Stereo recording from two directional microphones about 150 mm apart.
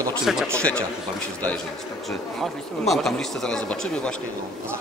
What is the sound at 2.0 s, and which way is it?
Speech, centre (ahead or behind).